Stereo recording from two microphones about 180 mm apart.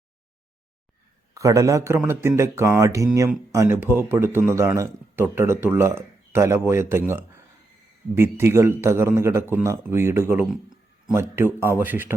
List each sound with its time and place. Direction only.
1.3 s a man's voice: 20° right (ahead or behind)